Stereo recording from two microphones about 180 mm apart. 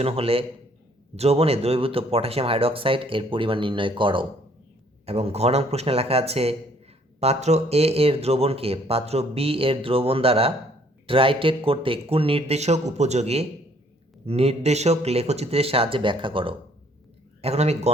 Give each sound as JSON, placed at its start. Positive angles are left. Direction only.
{"t": 0.0, "sound": "speech", "side_deg": -30}